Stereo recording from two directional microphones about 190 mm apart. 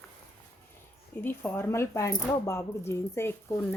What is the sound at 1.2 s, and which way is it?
Speech, 10° left (ahead or behind).